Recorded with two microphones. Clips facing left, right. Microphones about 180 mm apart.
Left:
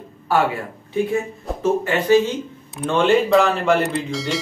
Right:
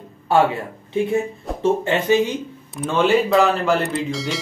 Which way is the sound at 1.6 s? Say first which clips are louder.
Right 1 dB; 25° right (ahead or behind).